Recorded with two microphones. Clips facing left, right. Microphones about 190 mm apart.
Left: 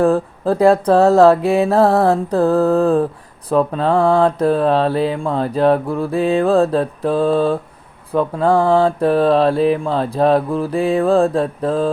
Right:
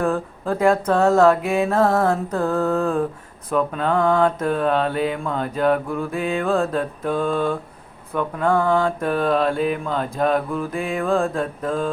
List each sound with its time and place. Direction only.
0.0 s mantra: 35° left (ahead or behind)